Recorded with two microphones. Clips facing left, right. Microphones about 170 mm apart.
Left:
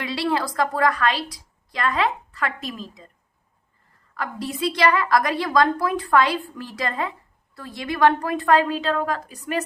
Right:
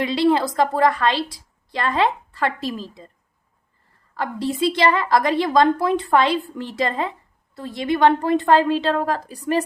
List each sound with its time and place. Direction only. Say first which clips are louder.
0.0 s a woman's voice: right 6 dB; 20° right (ahead or behind)
4.2 s a woman's voice: right 4 dB; 25° right (ahead or behind)